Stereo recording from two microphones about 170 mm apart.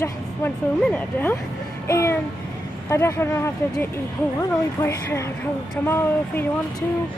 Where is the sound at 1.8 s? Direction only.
15° left (ahead or behind).